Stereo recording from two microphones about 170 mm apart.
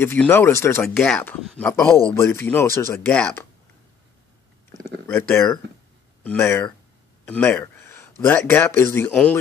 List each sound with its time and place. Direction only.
0.0 s speech: 15° left (ahead or behind)
4.8 s speech: 15° left (ahead or behind)